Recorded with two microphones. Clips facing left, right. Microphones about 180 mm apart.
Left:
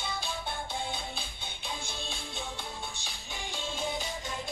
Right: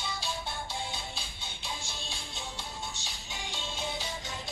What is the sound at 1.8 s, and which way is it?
Music, 55° left (ahead or behind).